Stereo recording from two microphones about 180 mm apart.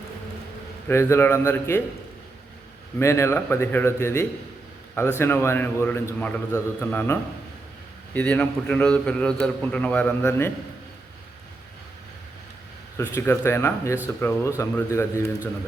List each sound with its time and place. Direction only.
0.9 s a man's voice: 15° left (ahead or behind)
3.0 s a man's voice: 15° left (ahead or behind)
13.0 s a man's voice: 10° left (ahead or behind)